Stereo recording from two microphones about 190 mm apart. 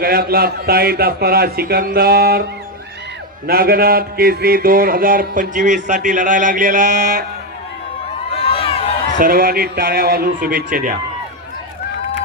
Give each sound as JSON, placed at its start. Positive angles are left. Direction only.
{"t": 0.0, "sound": "mantra", "side_deg": -50}
{"t": 3.4, "sound": "mantra", "side_deg": -50}
{"t": 8.3, "sound": "crowd", "side_deg": 30}
{"t": 9.1, "sound": "mantra", "side_deg": -50}